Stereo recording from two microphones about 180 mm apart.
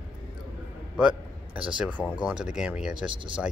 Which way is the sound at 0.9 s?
5° right (ahead or behind).